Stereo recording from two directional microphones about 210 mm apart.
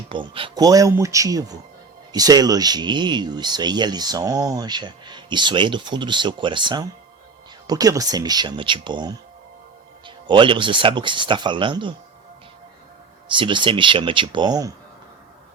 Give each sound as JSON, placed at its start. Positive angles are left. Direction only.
{"t": 0.1, "sound": "speech", "side_deg": -25}
{"t": 10.2, "sound": "speech", "side_deg": -25}
{"t": 13.3, "sound": "speech", "side_deg": -25}